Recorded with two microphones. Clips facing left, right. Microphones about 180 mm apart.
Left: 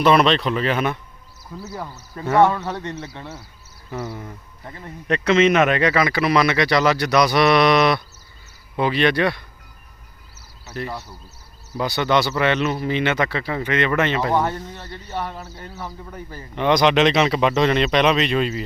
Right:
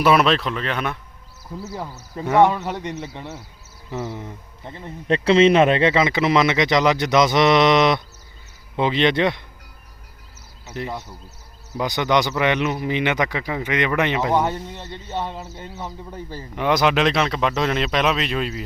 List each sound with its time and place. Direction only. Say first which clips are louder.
0.0 s speech: left 1 dB; 5° right (ahead or behind)
1.7 s a man's voice: even; 15° right (ahead or behind)
10.7 s speech: even; 20° right (ahead or behind)
16.6 s speech: left 2 dB; 5° right (ahead or behind)